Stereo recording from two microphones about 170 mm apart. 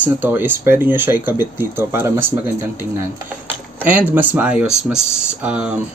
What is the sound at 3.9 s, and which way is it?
Speech, 10° right (ahead or behind).